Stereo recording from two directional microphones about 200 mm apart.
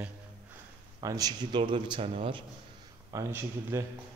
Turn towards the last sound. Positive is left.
turn(degrees=-10)  # may be behind; listen again after turning